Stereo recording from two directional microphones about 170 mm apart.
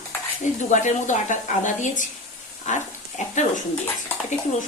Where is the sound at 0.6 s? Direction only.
45° left (ahead or behind).